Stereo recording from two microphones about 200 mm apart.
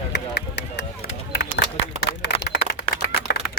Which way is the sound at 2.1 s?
25° left (ahead or behind).